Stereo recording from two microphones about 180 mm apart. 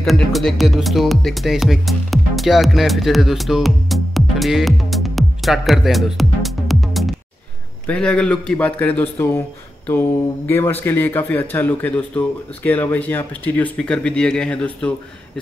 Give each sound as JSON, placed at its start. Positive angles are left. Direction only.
{"t": 0.0, "sound": "speech", "side_deg": 0}